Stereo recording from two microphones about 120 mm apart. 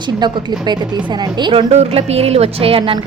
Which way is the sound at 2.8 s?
35° right (ahead or behind).